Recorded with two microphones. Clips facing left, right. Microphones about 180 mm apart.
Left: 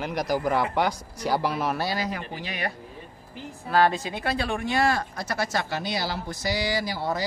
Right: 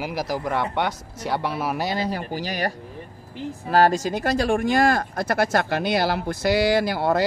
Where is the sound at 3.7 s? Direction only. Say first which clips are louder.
Right 4 dB; 45° right (ahead or behind).